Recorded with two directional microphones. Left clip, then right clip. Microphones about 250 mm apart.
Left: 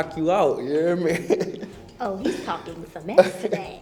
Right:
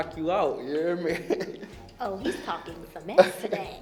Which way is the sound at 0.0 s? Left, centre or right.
Left.